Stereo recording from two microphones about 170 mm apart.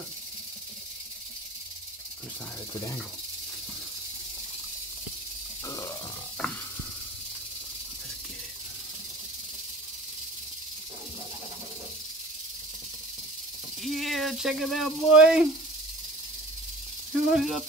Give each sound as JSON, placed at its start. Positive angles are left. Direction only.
{"t": 5.7, "sound": "a sound", "side_deg": 20}
{"t": 6.4, "sound": "snake", "side_deg": 0}
{"t": 13.8, "sound": "speech", "side_deg": 0}
{"t": 17.1, "sound": "speech", "side_deg": 0}